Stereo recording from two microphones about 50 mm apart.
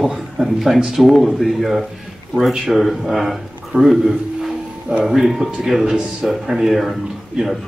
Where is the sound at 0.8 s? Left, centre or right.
Centre.